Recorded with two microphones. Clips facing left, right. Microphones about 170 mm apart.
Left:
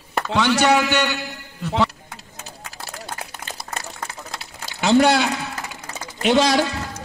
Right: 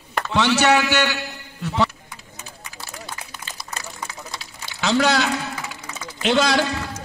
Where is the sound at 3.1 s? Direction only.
55° left (ahead or behind).